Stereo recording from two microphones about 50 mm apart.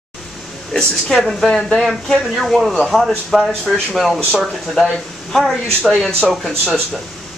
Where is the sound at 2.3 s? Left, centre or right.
Centre.